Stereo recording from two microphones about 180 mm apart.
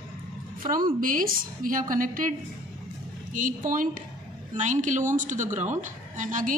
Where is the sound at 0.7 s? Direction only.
50° right (ahead or behind).